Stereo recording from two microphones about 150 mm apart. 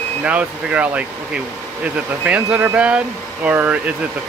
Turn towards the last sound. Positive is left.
turn(degrees=-10)  # may be behind; listen again after turning